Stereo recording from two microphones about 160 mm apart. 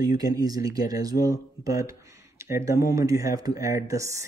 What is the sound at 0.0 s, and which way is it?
Speech, 25° right (ahead or behind).